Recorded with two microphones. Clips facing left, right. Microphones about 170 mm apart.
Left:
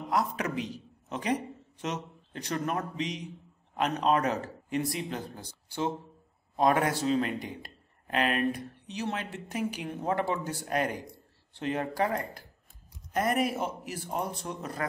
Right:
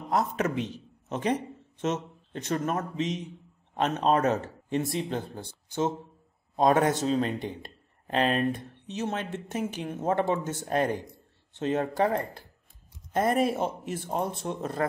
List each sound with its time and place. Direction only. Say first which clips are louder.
0.1 s a man's voice: right 3 dB; 25° right (ahead or behind)
6.5 s a man's voice: right 3 dB; 25° right (ahead or behind)